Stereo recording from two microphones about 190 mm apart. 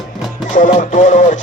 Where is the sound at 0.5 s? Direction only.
40° left (ahead or behind).